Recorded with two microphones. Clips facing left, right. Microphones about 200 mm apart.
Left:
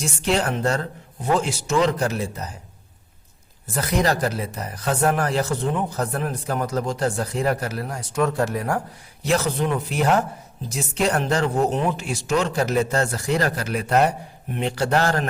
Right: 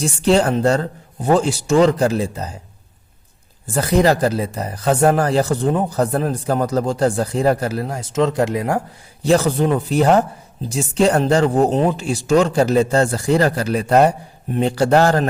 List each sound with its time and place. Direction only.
0.0 s speech: 30° right (ahead or behind)
3.7 s speech: 30° right (ahead or behind)
9.2 s speech: 30° right (ahead or behind)